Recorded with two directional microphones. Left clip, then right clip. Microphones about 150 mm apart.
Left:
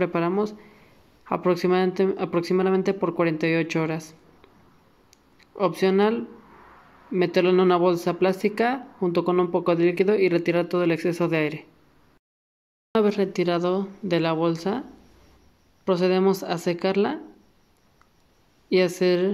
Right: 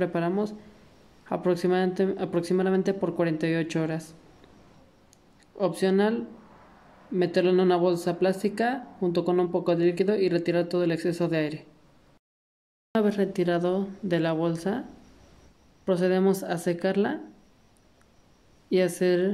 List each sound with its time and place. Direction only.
0.0 s a woman's voice: 10° left (ahead or behind)
5.6 s a woman's voice: 10° left (ahead or behind)
12.9 s speech: 5° left (ahead or behind)
18.7 s speech: 5° left (ahead or behind)